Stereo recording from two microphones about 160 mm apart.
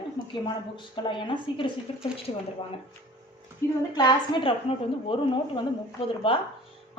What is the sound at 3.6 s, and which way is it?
Speech, 15° left (ahead or behind).